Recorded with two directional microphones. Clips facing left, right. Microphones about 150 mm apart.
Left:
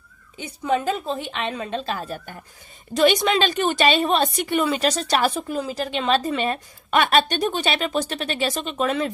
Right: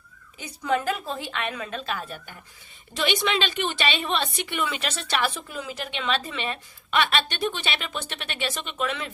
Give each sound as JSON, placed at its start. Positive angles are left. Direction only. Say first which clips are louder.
{"t": 0.3, "sound": "a woman's voice", "louder": "left 3 dB", "side_deg": 25}